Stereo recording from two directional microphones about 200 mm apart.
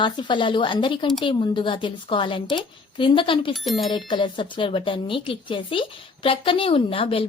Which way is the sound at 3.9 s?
25° left (ahead or behind).